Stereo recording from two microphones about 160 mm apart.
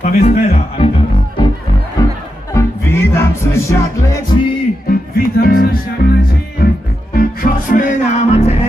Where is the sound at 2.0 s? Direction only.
25° left (ahead or behind).